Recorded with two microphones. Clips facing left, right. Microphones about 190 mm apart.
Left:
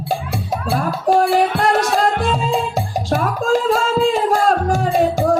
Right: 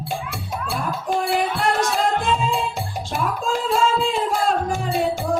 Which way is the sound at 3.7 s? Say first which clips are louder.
Left 4 dB; 40° left (ahead or behind).